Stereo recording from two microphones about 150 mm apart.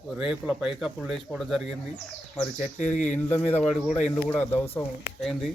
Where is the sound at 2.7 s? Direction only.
55° left (ahead or behind).